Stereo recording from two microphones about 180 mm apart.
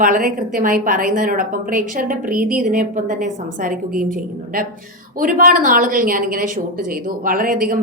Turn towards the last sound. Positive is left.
turn(degrees=-50)  # may be behind; listen again after turning